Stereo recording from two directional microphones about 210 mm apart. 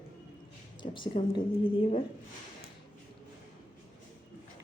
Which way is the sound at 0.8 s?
20° left (ahead or behind).